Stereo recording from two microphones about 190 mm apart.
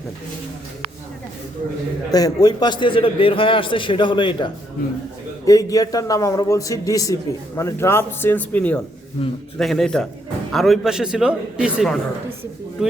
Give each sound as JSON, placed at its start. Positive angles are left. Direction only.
{"t": 2.1, "sound": "a man's voice", "side_deg": 20}
{"t": 9.2, "sound": "a man's voice", "side_deg": 30}
{"t": 9.6, "sound": "speech", "side_deg": 0}